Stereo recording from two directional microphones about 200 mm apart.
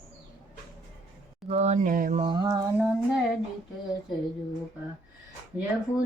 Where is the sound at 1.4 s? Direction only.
35° right (ahead or behind).